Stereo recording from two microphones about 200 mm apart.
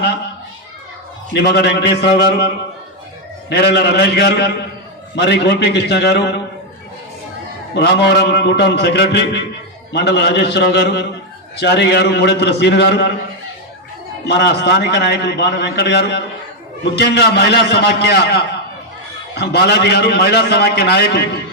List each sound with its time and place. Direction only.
1.3 s a man's voice: 55° left (ahead or behind)
3.5 s a man's voice: 55° left (ahead or behind)
7.8 s a man's voice: 55° left (ahead or behind)
14.3 s a man's voice: 55° left (ahead or behind)